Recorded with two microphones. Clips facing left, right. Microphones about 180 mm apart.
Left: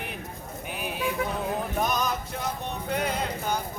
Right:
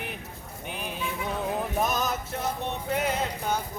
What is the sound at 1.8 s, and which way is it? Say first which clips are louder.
Music: left 1 dB; centre (ahead or behind).